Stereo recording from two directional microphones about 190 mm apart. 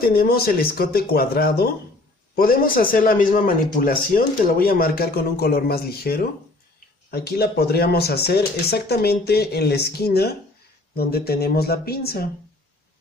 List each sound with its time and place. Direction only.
0.0 s speech: 50° left (ahead or behind)